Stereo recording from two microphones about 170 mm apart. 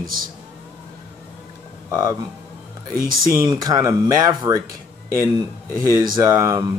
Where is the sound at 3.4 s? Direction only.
20° right (ahead or behind).